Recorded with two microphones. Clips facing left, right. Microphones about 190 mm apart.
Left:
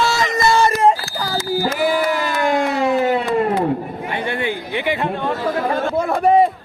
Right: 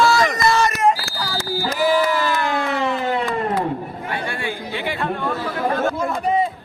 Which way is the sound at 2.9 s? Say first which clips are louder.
Left 6 dB; 40° left (ahead or behind).